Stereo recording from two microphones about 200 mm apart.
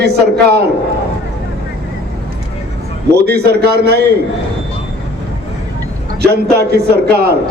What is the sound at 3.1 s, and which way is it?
A man's voice, 55° right (ahead or behind).